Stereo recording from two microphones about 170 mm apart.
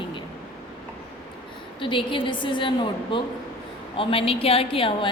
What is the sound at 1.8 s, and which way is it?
A woman's voice, 30° left (ahead or behind).